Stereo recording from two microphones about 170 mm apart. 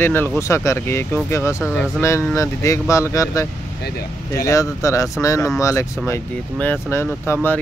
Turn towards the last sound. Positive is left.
turn(degrees=10)  # may be behind; listen again after turning